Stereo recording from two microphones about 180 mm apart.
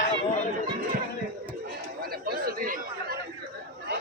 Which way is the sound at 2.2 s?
55° right (ahead or behind).